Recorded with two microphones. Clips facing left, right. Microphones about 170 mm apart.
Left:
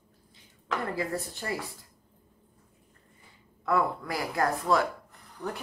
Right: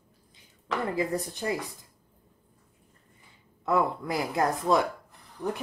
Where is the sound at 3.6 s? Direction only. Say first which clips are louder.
Right 1 dB; 20° right (ahead or behind).